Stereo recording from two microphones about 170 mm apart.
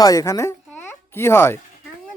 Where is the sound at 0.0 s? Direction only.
20° left (ahead or behind).